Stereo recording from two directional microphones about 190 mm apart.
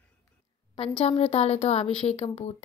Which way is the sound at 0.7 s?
30° left (ahead or behind).